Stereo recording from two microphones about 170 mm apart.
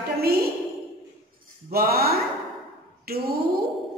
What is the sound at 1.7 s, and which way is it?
Speech, 65° right (ahead or behind).